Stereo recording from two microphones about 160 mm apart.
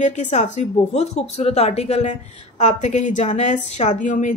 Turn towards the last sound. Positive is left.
turn(degrees=55)  # may be behind; listen again after turning